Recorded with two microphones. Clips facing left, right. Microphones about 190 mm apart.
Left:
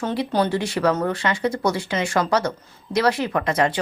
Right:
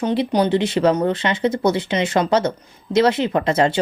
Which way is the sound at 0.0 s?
20° right (ahead or behind).